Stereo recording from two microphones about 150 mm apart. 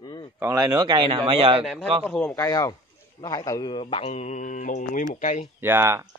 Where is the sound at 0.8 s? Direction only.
35° right (ahead or behind).